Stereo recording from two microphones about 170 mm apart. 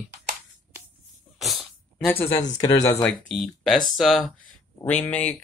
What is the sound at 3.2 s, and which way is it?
Speech, centre (ahead or behind).